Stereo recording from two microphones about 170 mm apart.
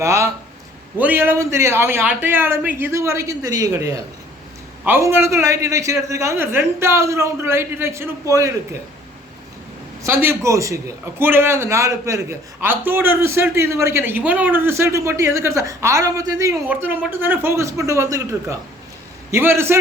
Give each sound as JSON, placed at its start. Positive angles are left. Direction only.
{"t": 0.0, "sound": "a man's voice", "side_deg": -15}
{"t": 10.0, "sound": "a man's voice", "side_deg": -15}